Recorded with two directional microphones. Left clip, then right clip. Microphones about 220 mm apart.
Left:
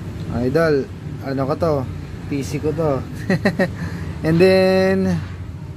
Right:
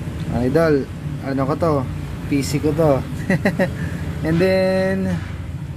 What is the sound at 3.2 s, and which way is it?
Speech, 10° left (ahead or behind).